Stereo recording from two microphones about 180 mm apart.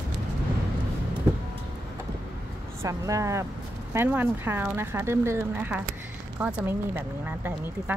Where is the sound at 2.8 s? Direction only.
15° right (ahead or behind).